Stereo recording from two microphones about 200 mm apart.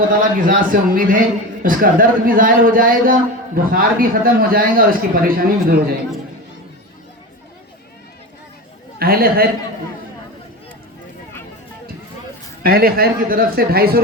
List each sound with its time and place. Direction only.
0.1 s a man's voice: 45° right (ahead or behind)
9.0 s a man's voice: 50° right (ahead or behind)
12.6 s a man's voice: 50° right (ahead or behind)